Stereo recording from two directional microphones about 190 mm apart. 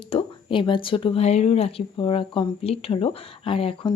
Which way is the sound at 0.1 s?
30° left (ahead or behind).